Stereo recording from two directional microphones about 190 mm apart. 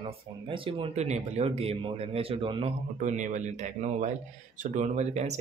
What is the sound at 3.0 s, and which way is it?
Speech, 40° right (ahead or behind).